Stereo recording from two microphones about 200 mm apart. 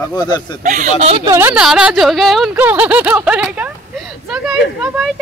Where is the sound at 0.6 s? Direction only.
40° right (ahead or behind).